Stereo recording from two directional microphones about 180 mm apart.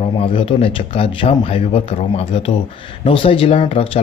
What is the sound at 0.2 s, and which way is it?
Speech, 30° left (ahead or behind).